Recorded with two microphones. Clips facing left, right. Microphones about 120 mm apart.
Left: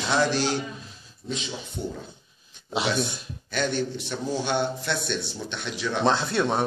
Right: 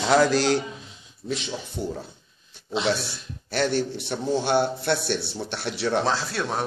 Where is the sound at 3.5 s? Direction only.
70° right (ahead or behind).